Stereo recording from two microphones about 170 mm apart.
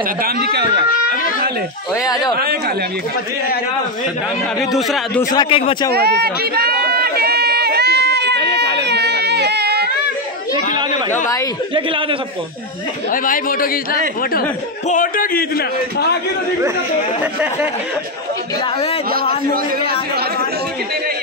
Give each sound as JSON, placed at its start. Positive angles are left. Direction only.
{"t": 0.2, "sound": "speech", "side_deg": -75}
{"t": 2.0, "sound": "speech", "side_deg": 25}
{"t": 4.7, "sound": "a man's voice", "side_deg": 0}
{"t": 5.3, "sound": "speech", "side_deg": 30}
{"t": 5.9, "sound": "a sound", "side_deg": -70}
{"t": 13.1, "sound": "a man's voice", "side_deg": 55}
{"t": 14.9, "sound": "a man's voice", "side_deg": 55}
{"t": 17.2, "sound": "speech", "side_deg": -10}
{"t": 19.1, "sound": "a man's voice", "side_deg": -60}